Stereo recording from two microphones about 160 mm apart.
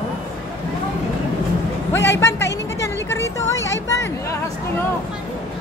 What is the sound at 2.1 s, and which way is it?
Speech, 15° left (ahead or behind).